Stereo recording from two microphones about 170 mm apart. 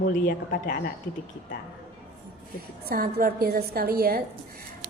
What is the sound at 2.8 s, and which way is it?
A woman's voice, 60° right (ahead or behind).